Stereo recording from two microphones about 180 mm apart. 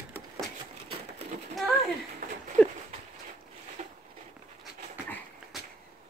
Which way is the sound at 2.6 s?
5° left (ahead or behind).